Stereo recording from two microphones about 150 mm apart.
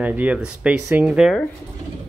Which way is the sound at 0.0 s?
10° right (ahead or behind).